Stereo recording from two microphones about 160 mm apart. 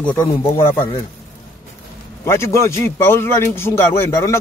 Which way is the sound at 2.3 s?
15° left (ahead or behind).